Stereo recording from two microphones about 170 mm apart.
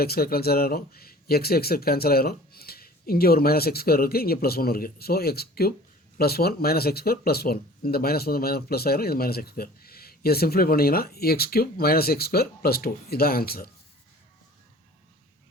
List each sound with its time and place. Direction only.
0.0 s speech: 65° left (ahead or behind)